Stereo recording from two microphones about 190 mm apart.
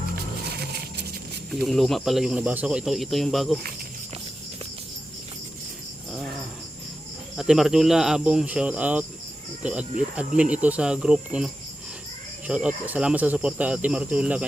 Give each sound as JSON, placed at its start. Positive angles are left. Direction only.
{"t": 0.5, "sound": "a sound", "side_deg": -55}
{"t": 1.6, "sound": "speech", "side_deg": 0}
{"t": 7.3, "sound": "speech", "side_deg": 0}